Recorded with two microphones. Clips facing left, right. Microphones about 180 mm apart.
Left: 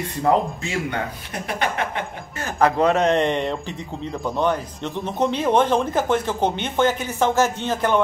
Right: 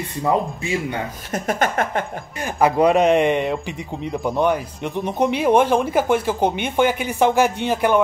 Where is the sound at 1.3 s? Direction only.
45° right (ahead or behind).